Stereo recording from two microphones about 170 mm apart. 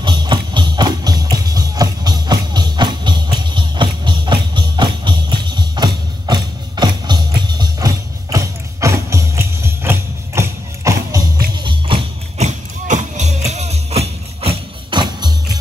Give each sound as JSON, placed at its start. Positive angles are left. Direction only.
{"t": 0.0, "sound": "music", "side_deg": -25}
{"t": 12.4, "sound": "music", "side_deg": -45}